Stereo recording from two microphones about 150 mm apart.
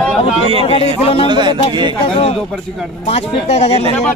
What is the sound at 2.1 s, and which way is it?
Speech, 40° left (ahead or behind).